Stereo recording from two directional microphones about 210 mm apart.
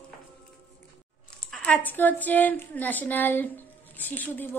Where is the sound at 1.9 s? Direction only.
10° left (ahead or behind).